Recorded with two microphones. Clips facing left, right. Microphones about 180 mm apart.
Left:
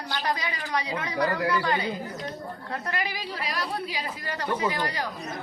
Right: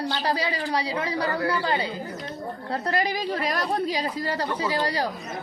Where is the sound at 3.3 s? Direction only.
45° right (ahead or behind).